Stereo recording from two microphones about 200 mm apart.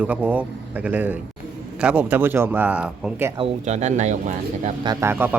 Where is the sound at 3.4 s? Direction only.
35° right (ahead or behind).